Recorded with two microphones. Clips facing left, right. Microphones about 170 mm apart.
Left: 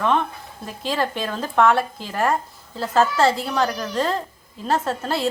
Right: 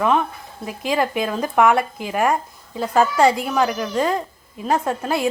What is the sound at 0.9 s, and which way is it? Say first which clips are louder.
A woman's voice: right 3 dB; 10° right (ahead or behind).